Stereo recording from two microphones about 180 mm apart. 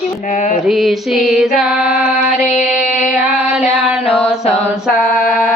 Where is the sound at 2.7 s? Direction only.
5° right (ahead or behind).